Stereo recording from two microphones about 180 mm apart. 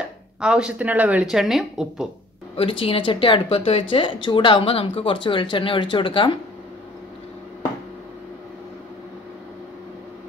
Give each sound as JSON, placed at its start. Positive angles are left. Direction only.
{"t": 0.4, "sound": "speech", "side_deg": -5}
{"t": 2.5, "sound": "speech", "side_deg": 30}